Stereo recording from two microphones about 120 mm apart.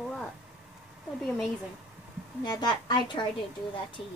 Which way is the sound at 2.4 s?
40° left (ahead or behind).